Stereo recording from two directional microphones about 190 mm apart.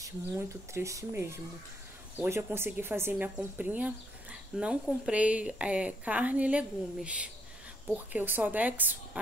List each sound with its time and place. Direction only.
0.0 s speech: 15° right (ahead or behind)